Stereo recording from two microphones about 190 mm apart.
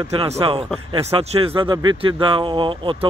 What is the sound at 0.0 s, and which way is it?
Speech, 30° right (ahead or behind).